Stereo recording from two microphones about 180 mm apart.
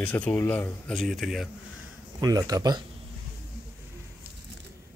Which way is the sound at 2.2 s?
20° right (ahead or behind).